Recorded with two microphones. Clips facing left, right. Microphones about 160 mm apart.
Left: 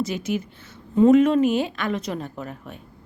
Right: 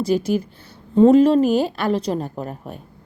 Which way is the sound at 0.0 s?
35° right (ahead or behind).